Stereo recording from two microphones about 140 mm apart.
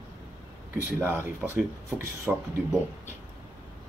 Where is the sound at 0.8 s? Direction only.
15° right (ahead or behind).